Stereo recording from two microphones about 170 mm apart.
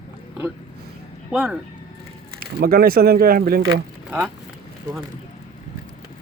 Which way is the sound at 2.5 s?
60° right (ahead or behind).